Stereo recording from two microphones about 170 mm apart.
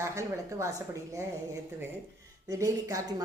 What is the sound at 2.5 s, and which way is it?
Speech, 20° right (ahead or behind).